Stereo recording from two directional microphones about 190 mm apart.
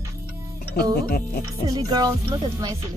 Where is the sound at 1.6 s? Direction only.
20° right (ahead or behind).